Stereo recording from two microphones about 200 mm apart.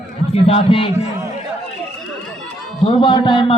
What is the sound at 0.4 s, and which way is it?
Speech, 25° left (ahead or behind).